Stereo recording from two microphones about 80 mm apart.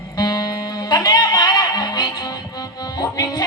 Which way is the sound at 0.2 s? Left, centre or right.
Left.